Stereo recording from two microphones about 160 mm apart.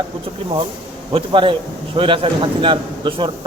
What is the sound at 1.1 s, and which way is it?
A man's voice, 30° right (ahead or behind).